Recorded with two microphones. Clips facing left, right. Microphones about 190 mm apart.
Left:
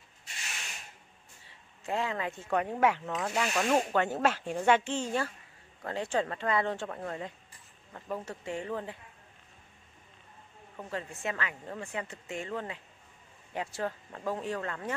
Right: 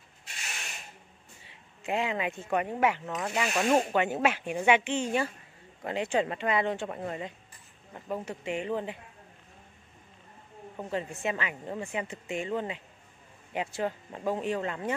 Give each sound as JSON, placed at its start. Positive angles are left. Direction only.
{"t": 1.9, "sound": "speech", "side_deg": -15}
{"t": 10.8, "sound": "speech", "side_deg": -20}